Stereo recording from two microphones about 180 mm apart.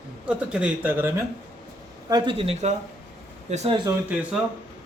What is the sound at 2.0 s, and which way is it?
Speech, 25° right (ahead or behind).